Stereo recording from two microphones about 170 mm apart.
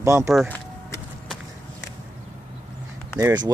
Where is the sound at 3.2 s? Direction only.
25° right (ahead or behind).